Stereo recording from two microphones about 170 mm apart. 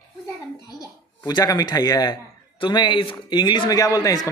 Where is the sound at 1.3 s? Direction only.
20° left (ahead or behind).